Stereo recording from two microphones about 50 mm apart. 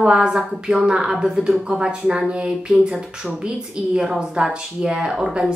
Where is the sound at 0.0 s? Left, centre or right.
Centre.